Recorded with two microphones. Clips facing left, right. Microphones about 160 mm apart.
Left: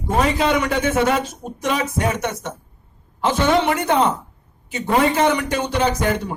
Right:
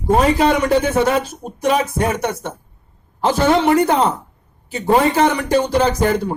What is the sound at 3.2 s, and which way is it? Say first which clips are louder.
A man's voice: right 3 dB; 35° right (ahead or behind).